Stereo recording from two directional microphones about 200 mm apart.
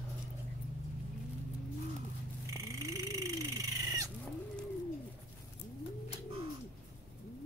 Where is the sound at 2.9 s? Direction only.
15° right (ahead or behind).